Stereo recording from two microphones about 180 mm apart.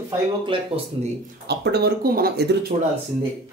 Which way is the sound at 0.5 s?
30° right (ahead or behind).